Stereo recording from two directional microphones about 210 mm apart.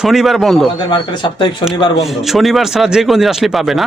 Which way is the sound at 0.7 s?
20° left (ahead or behind).